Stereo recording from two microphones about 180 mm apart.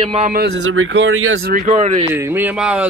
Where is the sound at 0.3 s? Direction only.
80° right.